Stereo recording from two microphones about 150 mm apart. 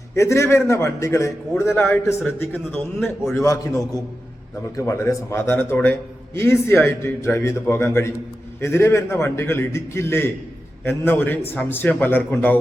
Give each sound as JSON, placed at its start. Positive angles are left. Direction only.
{"t": 0.2, "sound": "a man's voice", "side_deg": 20}